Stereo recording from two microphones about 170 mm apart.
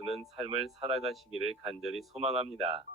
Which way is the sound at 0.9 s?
Centre (ahead or behind).